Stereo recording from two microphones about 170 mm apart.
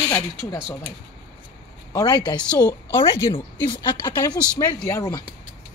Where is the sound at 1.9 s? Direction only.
25° left (ahead or behind).